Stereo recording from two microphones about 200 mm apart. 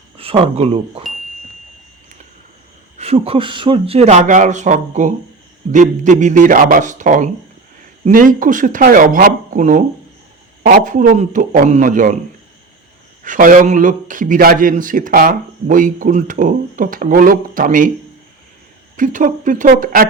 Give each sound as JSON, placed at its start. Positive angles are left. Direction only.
{"t": 0.2, "sound": "speech", "side_deg": -30}
{"t": 3.0, "sound": "a man's voice", "side_deg": -30}
{"t": 13.2, "sound": "a man's voice", "side_deg": -40}
{"t": 18.9, "sound": "speech", "side_deg": -40}